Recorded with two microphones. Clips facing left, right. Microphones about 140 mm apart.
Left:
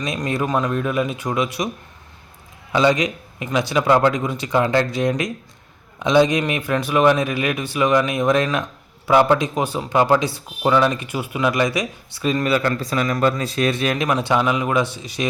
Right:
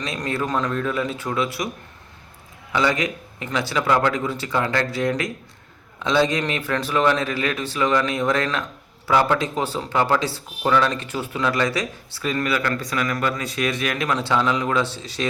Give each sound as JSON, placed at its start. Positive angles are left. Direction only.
{"t": 0.0, "sound": "speech", "side_deg": 15}
{"t": 2.7, "sound": "speech", "side_deg": 20}